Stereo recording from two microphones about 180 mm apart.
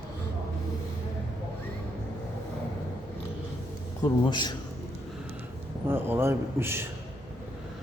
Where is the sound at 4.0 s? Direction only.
25° left (ahead or behind).